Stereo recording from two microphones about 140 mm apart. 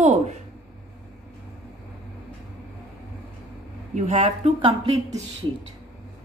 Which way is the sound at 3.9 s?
55° right (ahead or behind).